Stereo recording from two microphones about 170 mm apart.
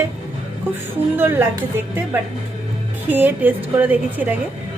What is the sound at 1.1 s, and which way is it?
Speech, 15° right (ahead or behind).